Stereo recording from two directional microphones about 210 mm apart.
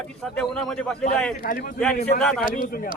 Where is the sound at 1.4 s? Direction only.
45° left (ahead or behind).